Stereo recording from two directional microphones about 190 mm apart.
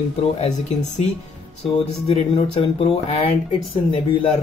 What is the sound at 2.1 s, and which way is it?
Speech, 30° left (ahead or behind).